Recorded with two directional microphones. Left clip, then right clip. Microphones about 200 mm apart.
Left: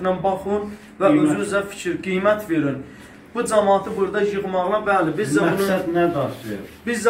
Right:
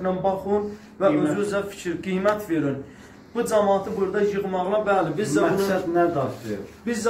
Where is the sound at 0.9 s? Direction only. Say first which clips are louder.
Left 4 dB; 10° right (ahead or behind).